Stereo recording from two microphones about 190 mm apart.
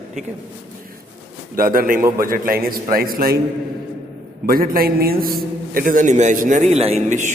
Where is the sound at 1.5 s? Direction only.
50° right (ahead or behind).